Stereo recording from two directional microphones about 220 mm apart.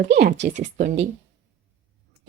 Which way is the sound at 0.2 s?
50° right (ahead or behind).